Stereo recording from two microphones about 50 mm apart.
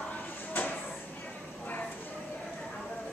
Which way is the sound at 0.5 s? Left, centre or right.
Left.